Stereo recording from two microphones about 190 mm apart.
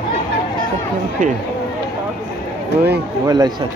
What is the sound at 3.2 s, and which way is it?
Speech, 20° right (ahead or behind).